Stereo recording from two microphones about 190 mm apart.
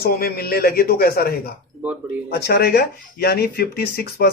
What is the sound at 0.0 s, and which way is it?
A man's voice, 55° left (ahead or behind).